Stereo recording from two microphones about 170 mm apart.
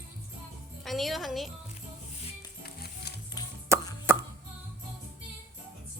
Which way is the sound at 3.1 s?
75° left (ahead or behind).